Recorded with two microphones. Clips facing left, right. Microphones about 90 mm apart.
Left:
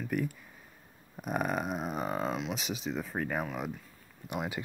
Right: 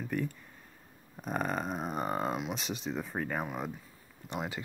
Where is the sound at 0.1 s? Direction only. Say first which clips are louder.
Left 2 dB; 10° left (ahead or behind); by 2.5 s 10° right (ahead or behind).